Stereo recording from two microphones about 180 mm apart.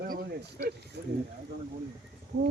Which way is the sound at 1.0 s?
70° right (ahead or behind).